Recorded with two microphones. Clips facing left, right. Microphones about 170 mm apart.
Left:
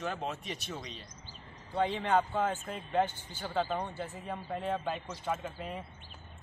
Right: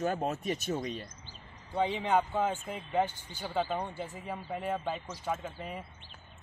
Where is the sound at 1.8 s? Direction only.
10° right (ahead or behind).